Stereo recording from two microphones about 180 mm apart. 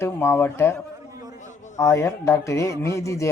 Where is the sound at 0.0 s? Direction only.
15° left (ahead or behind).